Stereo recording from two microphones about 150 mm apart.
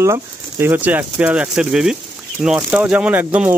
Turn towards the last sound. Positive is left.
turn(degrees=-10)  # may be behind; listen again after turning